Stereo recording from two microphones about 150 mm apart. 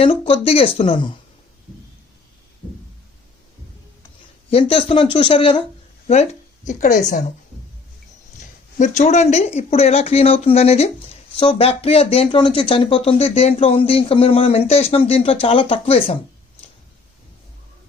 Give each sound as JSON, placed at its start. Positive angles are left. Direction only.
{"t": 0.0, "sound": "speech", "side_deg": 40}
{"t": 4.4, "sound": "speech", "side_deg": 40}
{"t": 6.7, "sound": "speech", "side_deg": 55}
{"t": 8.4, "sound": "speech", "side_deg": 50}